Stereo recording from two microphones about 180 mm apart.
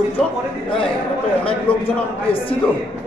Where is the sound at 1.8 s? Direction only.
30° left (ahead or behind).